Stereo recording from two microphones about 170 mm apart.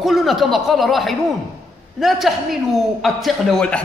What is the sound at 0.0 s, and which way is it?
A man's voice, centre (ahead or behind).